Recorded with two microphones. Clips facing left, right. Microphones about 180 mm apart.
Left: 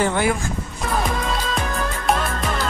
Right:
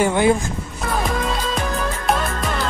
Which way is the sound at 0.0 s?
20° right (ahead or behind).